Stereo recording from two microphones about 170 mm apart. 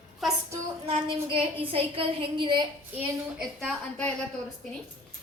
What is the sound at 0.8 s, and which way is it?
A woman's voice, 30° right (ahead or behind).